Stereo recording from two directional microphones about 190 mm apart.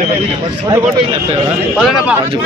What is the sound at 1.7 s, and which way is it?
Speech, centre (ahead or behind).